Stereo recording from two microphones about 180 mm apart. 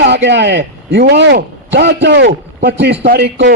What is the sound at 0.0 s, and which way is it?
A man's voice, 70° right (ahead or behind).